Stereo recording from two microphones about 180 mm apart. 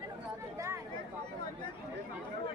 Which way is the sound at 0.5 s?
15° right (ahead or behind).